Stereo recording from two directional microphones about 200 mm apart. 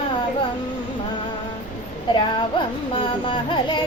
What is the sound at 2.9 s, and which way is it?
Music, 25° left (ahead or behind).